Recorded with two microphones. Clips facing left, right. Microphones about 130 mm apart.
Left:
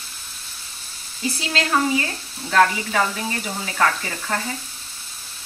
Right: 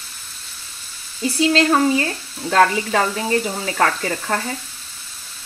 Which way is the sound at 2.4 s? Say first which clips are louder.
Right 2 dB; 45° right (ahead or behind).